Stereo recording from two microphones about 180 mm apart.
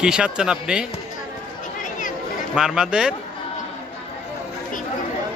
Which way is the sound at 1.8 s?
45° left (ahead or behind).